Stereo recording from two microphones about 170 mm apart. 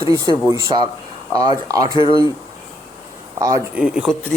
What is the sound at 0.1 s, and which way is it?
Speech, 20° right (ahead or behind).